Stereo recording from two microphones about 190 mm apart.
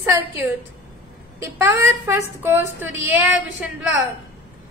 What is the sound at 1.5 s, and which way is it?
A woman's voice, 15° right (ahead or behind).